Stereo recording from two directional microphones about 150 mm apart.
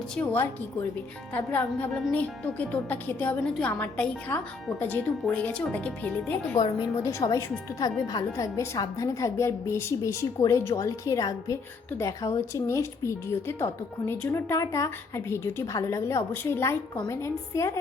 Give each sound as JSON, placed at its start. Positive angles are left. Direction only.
{"t": 1.3, "sound": "a woman's voice", "side_deg": 10}
{"t": 6.6, "sound": "a woman's voice", "side_deg": 20}